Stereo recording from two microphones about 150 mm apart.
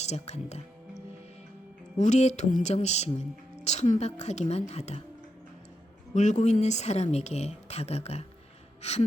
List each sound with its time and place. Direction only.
0.0 s speech: 45° left (ahead or behind)
2.0 s speech: 50° left (ahead or behind)
6.1 s speech: 55° left (ahead or behind)
8.8 s gasp: 45° left (ahead or behind)